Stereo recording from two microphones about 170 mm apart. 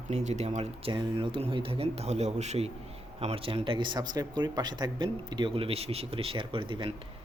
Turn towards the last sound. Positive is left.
turn(degrees=-30)  # may be behind; listen again after turning